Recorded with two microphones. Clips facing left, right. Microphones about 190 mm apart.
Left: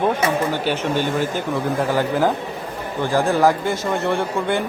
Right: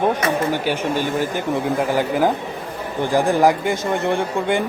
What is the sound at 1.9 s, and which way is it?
Speech, 15° right (ahead or behind).